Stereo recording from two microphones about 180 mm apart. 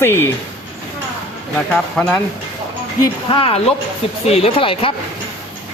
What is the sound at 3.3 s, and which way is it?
Speech, 30° left (ahead or behind).